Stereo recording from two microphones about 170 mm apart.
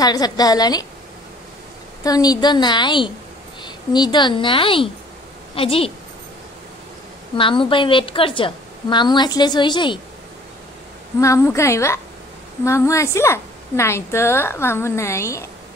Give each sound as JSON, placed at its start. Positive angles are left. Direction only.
{"t": 0.0, "sound": "a woman's voice", "side_deg": 20}
{"t": 2.0, "sound": "a woman's voice", "side_deg": 20}
{"t": 7.3, "sound": "a woman's voice", "side_deg": 30}
{"t": 11.1, "sound": "a woman's voice", "side_deg": 20}